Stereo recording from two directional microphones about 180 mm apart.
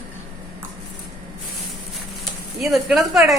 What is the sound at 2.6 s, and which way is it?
Speech, centre (ahead or behind).